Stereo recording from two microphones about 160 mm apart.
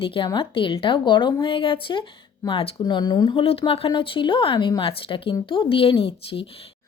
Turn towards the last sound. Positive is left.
turn(degrees=35)  # may be behind; listen again after turning